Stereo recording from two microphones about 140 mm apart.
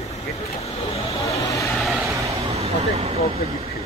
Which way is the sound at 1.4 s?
20° left (ahead or behind).